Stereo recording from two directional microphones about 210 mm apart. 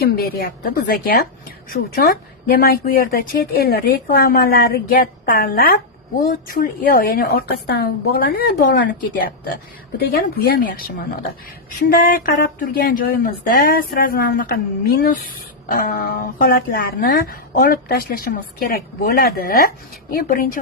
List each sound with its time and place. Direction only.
0.0 s a woman's voice: 45° left (ahead or behind)
10.0 s a woman's voice: 45° left (ahead or behind)